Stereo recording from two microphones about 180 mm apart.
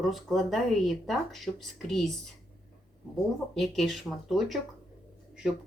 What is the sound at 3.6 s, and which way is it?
Speech, centre (ahead or behind).